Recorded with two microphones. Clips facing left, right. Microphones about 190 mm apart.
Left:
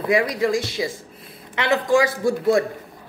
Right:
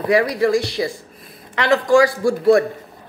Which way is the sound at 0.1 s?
15° left (ahead or behind).